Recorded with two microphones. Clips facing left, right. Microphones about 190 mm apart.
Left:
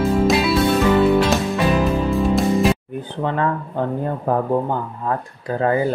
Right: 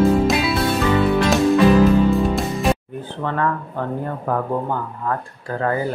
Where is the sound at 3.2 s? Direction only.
20° left (ahead or behind).